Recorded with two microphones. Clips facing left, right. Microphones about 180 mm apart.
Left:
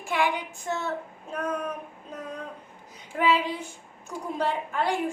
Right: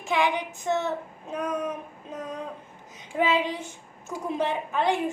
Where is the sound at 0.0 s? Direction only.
20° right (ahead or behind).